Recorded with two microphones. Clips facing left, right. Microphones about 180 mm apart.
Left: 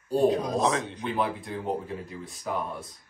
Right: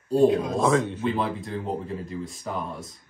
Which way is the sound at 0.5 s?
15° left (ahead or behind).